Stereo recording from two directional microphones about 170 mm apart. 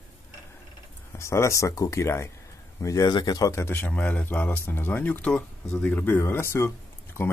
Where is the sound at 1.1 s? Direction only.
15° left (ahead or behind).